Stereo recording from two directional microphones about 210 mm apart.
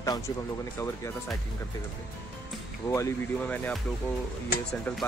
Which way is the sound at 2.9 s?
10° left (ahead or behind).